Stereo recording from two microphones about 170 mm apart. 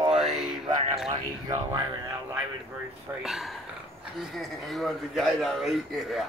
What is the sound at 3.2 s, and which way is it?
Speech, centre (ahead or behind).